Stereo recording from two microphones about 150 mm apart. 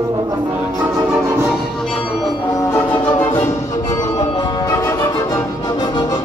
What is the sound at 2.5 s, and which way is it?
Music, 20° left (ahead or behind).